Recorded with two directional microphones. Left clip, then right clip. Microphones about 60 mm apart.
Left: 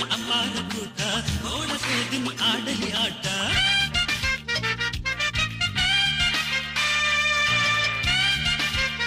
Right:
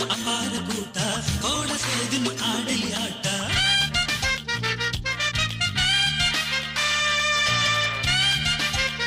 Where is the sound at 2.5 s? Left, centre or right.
Right.